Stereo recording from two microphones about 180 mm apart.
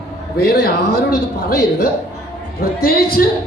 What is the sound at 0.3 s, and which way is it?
A woman's voice, 60° left (ahead or behind).